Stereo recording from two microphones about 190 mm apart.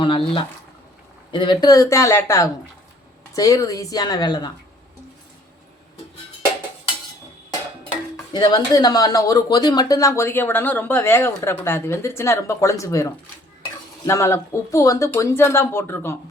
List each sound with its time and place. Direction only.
0.0 s speech: 25° left (ahead or behind)
8.1 s speech: 20° left (ahead or behind)